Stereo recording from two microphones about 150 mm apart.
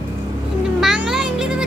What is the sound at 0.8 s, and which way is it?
Speech, 5° right (ahead or behind).